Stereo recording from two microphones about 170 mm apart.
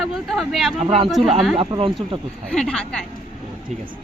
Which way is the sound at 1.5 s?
20° right (ahead or behind).